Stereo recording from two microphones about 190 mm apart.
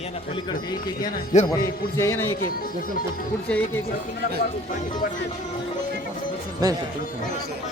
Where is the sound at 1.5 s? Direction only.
15° left (ahead or behind).